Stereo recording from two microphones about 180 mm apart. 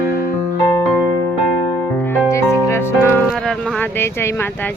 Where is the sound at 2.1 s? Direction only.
15° left (ahead or behind).